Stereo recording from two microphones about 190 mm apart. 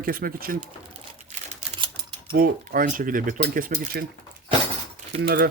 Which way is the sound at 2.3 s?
50° right (ahead or behind).